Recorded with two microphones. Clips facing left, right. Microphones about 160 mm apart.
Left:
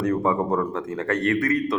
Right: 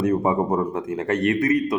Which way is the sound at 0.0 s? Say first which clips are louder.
Right 2 dB; 20° right (ahead or behind).